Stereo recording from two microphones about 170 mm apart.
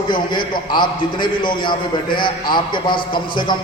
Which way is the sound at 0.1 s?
25° left (ahead or behind).